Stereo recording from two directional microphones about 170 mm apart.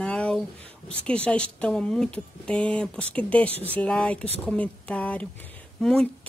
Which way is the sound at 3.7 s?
5° left (ahead or behind).